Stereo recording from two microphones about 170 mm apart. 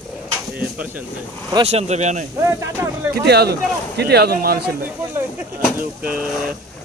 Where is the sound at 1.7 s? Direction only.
40° right (ahead or behind).